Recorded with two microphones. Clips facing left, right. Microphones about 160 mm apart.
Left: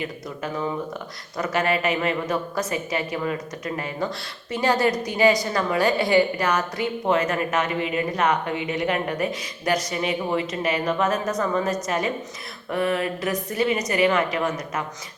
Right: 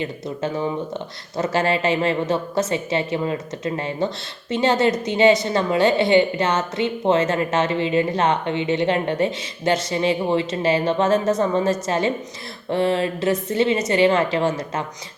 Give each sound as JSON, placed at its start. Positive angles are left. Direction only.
{"t": 0.0, "sound": "speech", "side_deg": -25}